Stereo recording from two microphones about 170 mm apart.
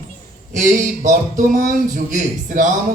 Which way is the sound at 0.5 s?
50° right (ahead or behind).